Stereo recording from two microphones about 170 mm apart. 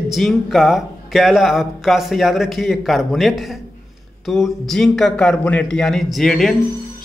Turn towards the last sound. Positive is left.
turn(degrees=0)  # may be behind; listen again after turning